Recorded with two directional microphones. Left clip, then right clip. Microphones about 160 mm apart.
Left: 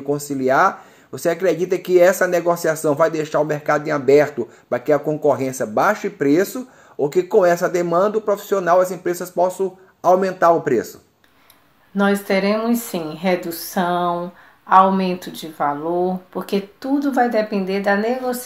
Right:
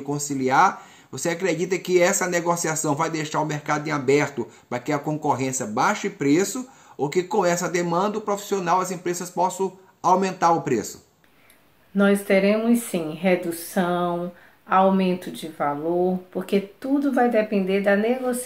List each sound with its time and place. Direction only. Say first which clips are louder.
0.1 s speech: left 4 dB; 15° right (ahead or behind)
12.0 s speech: left 1 dB; 20° right (ahead or behind)